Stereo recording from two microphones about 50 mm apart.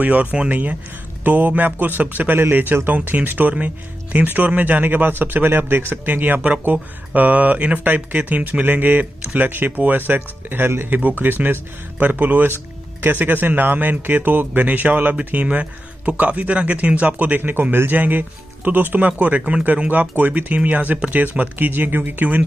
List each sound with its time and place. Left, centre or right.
0.0 s a man's voice: right
17.4 s a man's voice: right